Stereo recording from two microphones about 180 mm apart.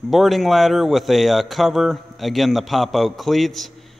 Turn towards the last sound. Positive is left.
turn(degrees=0)  # may be behind; listen again after turning